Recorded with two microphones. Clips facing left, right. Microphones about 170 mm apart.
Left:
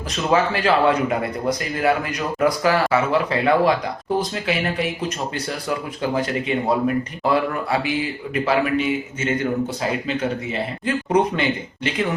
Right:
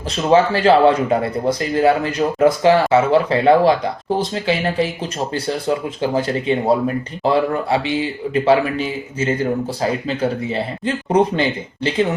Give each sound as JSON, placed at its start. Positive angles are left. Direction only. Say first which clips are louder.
{"t": 0.3, "sound": "speech", "louder": "right 6 dB", "side_deg": -30}